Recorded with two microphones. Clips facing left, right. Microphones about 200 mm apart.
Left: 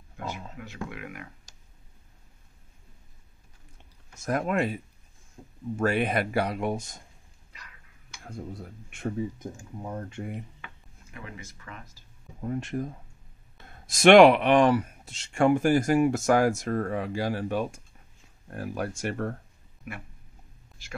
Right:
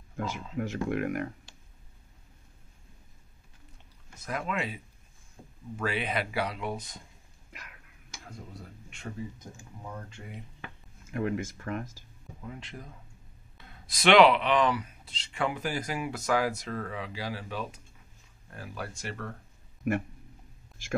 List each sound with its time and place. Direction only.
0.6 s speech: 50° right (ahead or behind)
4.2 s speech: 50° left (ahead or behind)
9.8 s speech: 45° left (ahead or behind)
11.1 s speech: 50° right (ahead or behind)
12.4 s speech: 50° left (ahead or behind)